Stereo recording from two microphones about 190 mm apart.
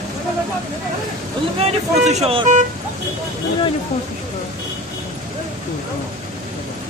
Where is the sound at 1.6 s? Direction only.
35° right (ahead or behind).